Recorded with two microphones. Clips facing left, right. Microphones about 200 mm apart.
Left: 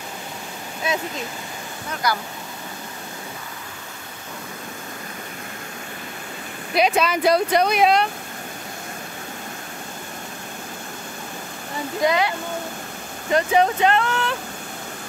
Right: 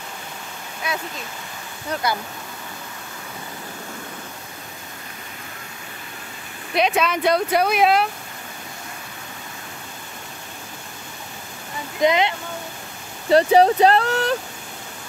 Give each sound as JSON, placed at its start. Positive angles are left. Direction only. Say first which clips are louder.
{"t": 0.8, "sound": "speech", "louder": "left 3 dB", "side_deg": 25}
{"t": 2.0, "sound": "speech", "louder": "left 1 dB", "side_deg": -25}
{"t": 6.7, "sound": "speech", "louder": "left 1 dB", "side_deg": 5}
{"t": 12.0, "sound": "speech", "louder": "right 2 dB", "side_deg": -20}
{"t": 13.3, "sound": "speech", "louder": "right 4 dB", "side_deg": -35}